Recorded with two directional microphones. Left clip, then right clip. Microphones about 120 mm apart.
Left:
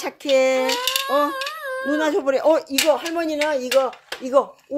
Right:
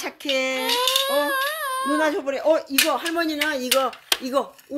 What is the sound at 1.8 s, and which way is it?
Speech, 10° left (ahead or behind).